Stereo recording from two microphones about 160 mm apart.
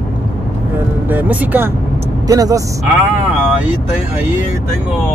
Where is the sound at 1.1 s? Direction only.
10° right (ahead or behind).